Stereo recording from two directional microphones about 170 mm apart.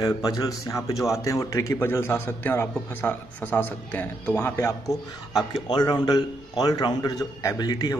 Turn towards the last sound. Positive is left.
turn(degrees=25)  # may be behind; listen again after turning